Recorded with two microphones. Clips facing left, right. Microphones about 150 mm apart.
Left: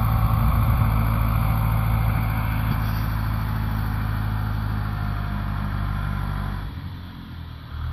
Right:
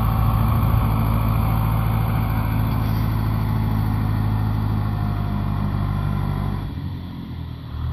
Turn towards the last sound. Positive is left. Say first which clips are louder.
# right 5 dB
turn(degrees=-20)  # may be behind; listen again after turning